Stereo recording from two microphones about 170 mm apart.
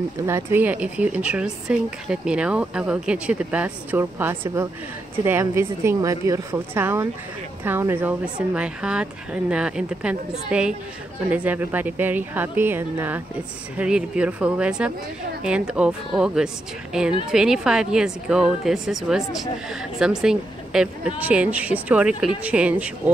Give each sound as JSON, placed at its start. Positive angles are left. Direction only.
{"t": 0.3, "sound": "a woman's voice", "side_deg": -15}